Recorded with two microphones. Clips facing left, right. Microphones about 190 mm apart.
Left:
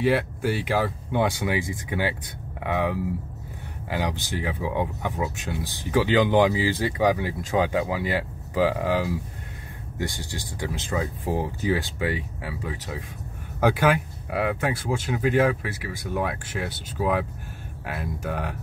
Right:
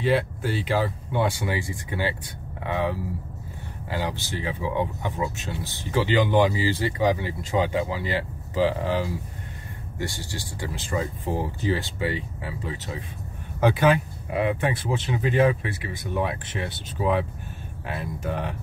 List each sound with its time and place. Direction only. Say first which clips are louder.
0.0 s speech: left 1 dB; 10° left (ahead or behind)